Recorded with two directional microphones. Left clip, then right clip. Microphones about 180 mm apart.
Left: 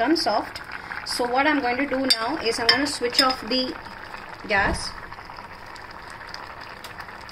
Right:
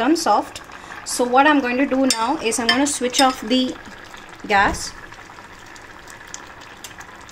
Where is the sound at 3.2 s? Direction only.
55° right (ahead or behind).